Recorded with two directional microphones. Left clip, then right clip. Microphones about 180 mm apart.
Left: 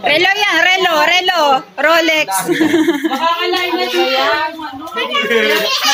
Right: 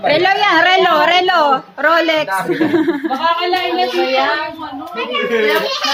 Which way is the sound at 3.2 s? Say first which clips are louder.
Right 1 dB; 15° right (ahead or behind).